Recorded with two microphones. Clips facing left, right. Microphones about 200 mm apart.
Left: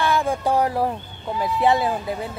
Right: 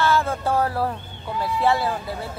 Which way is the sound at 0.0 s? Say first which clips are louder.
Even; 15° left (ahead or behind).